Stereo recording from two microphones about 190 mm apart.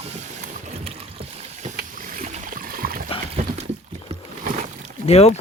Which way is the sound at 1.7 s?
45° right (ahead or behind).